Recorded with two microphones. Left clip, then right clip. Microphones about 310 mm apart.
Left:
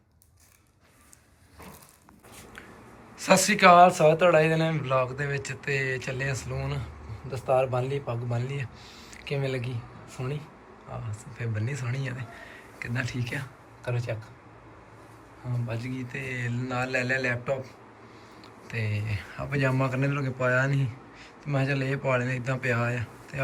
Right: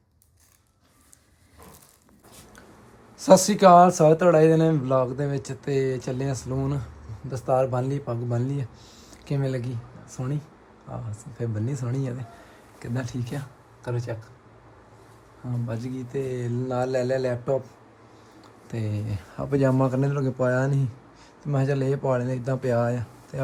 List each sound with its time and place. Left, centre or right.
3.2 s speech: right
11.3 s speech: right
15.7 s speech: right
18.7 s speech: right